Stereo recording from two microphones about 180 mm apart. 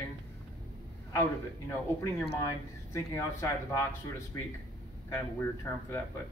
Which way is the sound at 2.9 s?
15° left (ahead or behind).